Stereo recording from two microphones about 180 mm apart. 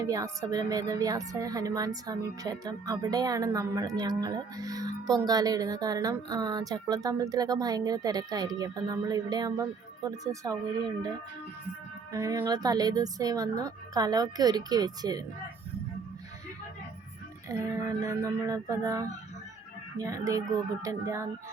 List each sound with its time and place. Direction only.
0.0 s speech: 20° right (ahead or behind)
12.1 s speech: 20° right (ahead or behind)
17.5 s a sound: 15° right (ahead or behind)